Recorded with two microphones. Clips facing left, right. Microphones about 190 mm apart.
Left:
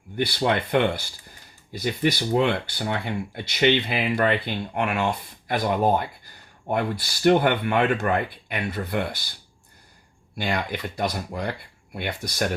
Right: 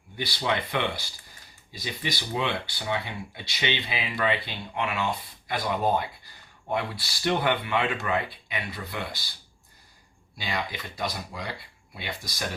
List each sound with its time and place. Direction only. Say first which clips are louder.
0.3 s speech: left 3 dB; 50° left (ahead or behind)
10.3 s speech: left 5 dB; 55° left (ahead or behind)